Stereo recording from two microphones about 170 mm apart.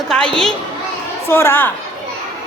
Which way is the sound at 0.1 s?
5° left (ahead or behind).